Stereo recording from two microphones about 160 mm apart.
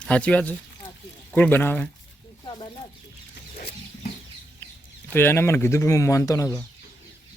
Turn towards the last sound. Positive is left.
turn(degrees=20)  # may be behind; listen again after turning